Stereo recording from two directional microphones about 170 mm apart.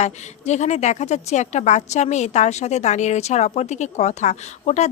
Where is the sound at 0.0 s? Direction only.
40° left (ahead or behind).